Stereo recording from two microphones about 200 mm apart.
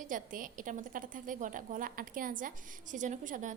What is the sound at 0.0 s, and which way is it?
A woman's voice, 40° right (ahead or behind).